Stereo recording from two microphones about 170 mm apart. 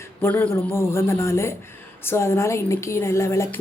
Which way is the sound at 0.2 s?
10° left (ahead or behind).